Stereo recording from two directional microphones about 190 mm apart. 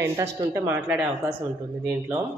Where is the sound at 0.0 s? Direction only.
15° right (ahead or behind).